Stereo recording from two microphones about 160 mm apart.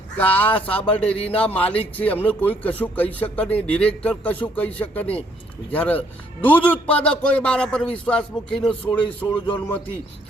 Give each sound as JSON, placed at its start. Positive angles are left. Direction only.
{"t": 0.2, "sound": "a man's voice", "side_deg": 10}
{"t": 8.8, "sound": "speech", "side_deg": 30}